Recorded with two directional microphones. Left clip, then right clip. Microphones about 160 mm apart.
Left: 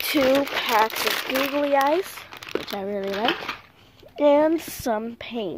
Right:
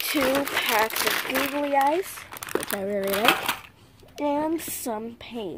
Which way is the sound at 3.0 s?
30° right (ahead or behind).